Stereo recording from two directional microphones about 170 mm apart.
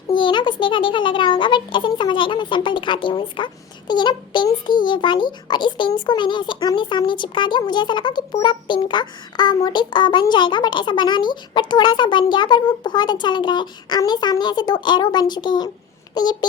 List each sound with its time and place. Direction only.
0.1 s a child's voice: 25° left (ahead or behind)